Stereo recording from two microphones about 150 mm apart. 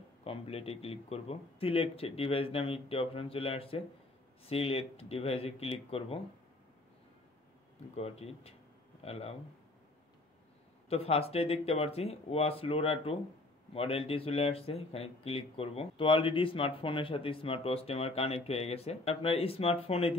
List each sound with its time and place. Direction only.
0.2 s speech: 40° left (ahead or behind)
7.9 s speech: 45° left (ahead or behind)
10.9 s speech: 40° left (ahead or behind)